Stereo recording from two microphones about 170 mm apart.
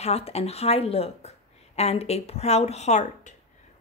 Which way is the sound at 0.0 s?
40° left (ahead or behind).